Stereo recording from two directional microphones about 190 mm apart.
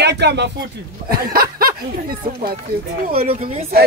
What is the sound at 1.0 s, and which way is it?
Speech, 50° right (ahead or behind).